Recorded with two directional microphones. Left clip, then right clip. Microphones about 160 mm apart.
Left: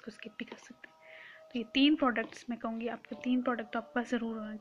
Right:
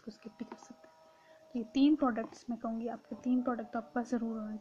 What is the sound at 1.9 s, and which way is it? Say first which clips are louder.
Speech: left 2 dB; 10° left (ahead or behind).